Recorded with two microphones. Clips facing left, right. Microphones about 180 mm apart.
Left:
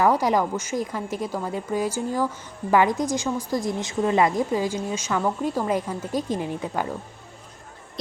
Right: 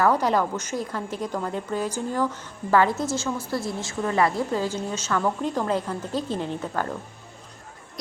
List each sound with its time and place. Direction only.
0.0 s a woman's voice: 10° left (ahead or behind)